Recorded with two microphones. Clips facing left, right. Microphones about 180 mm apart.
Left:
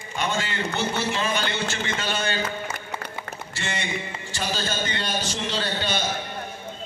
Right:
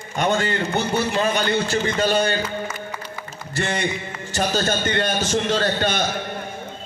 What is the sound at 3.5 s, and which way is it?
A man's voice, 45° right (ahead or behind).